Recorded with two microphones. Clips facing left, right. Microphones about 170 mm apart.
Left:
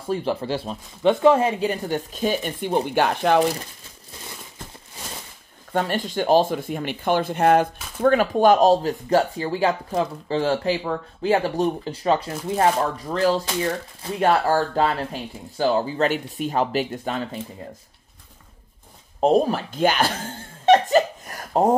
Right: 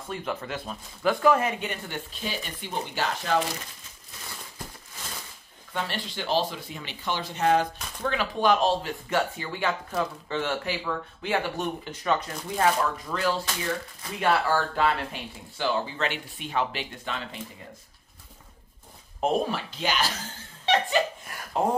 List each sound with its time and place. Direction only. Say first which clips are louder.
0.1 s speech: left 9 dB; 30° left (ahead or behind)
2.6 s speech: left 9 dB; 55° left (ahead or behind)
5.7 s speech: left 9 dB; 45° left (ahead or behind); by 12.5 s 30° left (ahead or behind)
13.1 s speech: left 7 dB; 40° left (ahead or behind)
19.1 s speech: left 7 dB; 35° left (ahead or behind)